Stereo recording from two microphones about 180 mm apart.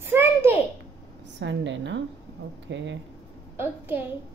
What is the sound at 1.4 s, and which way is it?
Speech, 85° right.